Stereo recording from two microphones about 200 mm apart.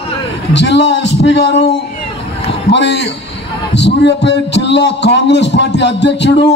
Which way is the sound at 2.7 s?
60° left (ahead or behind).